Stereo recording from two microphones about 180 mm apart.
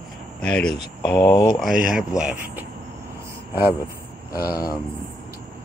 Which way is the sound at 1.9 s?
5° right (ahead or behind).